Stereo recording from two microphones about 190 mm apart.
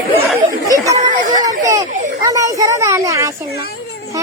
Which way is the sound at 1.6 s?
15° right (ahead or behind).